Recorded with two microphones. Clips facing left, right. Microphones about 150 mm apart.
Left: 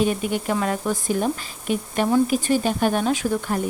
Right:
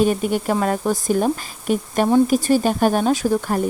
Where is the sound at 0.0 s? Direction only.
45° right (ahead or behind).